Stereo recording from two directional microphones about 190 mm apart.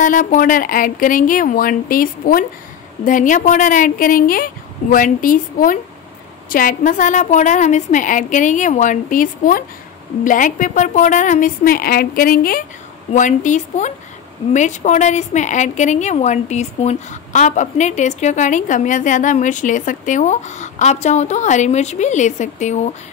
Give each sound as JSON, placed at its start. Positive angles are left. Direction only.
{"t": 0.0, "sound": "a woman's voice", "side_deg": 45}